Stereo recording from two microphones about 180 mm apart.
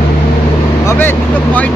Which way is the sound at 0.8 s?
10° left (ahead or behind).